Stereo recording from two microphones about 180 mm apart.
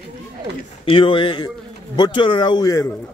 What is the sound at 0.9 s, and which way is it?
A man's voice, 30° left (ahead or behind).